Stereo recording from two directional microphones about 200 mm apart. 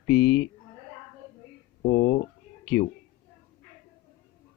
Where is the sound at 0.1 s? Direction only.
50° left (ahead or behind).